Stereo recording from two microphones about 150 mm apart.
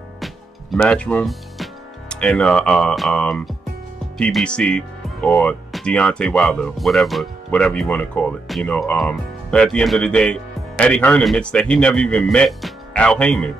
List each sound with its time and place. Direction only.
0.2 s speech: 5° left (ahead or behind)